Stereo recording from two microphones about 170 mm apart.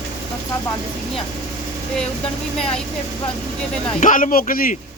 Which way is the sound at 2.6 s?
5° left (ahead or behind).